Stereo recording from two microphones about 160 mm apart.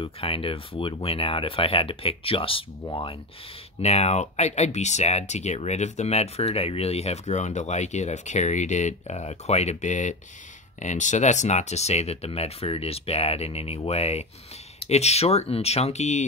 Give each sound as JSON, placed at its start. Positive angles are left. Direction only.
{"t": 0.0, "sound": "speech", "side_deg": 35}